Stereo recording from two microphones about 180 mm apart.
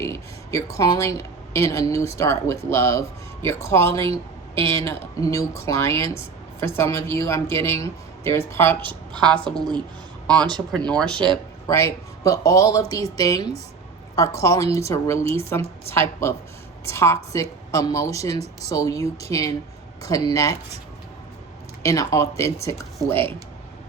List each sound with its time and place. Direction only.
0.0 s speech: 15° left (ahead or behind)
8.9 s a woman's voice: 25° right (ahead or behind)
9.4 s speech: 5° left (ahead or behind)
10.7 s speech: 5° left (ahead or behind)
11.6 s a woman's voice: 15° left (ahead or behind)
21.8 s speech: 15° left (ahead or behind)